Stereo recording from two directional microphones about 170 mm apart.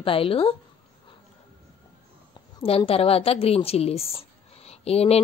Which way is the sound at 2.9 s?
35° left (ahead or behind).